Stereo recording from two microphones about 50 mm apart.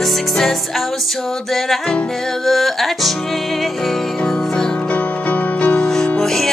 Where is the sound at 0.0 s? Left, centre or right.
Centre.